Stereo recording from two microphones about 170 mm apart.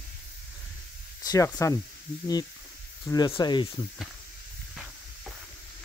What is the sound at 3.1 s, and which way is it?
Speech, 20° left (ahead or behind).